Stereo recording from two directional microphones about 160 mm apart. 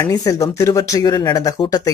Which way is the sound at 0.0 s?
20° left (ahead or behind).